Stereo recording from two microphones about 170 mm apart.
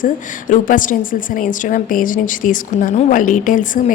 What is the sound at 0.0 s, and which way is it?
A woman's voice, 50° left (ahead or behind).